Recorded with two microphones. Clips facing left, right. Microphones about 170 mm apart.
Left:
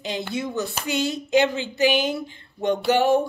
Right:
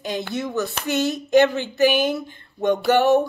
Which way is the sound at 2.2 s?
50° right (ahead or behind).